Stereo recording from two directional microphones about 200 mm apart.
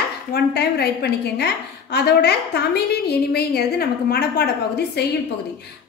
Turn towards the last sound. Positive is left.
turn(degrees=55)  # may be behind; listen again after turning